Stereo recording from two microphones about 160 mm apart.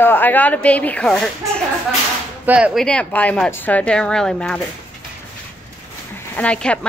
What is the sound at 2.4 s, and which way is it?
Speech, 5° right (ahead or behind).